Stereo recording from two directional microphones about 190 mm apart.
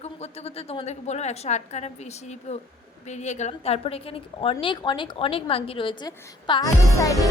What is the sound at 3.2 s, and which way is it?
A woman's voice, 35° left (ahead or behind).